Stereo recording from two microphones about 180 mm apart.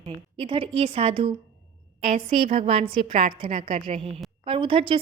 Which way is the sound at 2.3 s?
30° right (ahead or behind).